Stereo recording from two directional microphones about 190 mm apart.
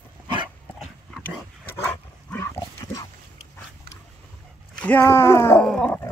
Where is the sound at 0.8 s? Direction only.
5° left (ahead or behind).